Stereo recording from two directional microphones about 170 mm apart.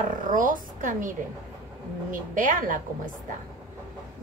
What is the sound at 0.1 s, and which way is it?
A woman's voice, 50° right (ahead or behind).